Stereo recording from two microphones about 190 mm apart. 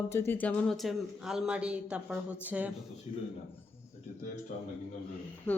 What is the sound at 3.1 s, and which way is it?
Speech, 35° left (ahead or behind).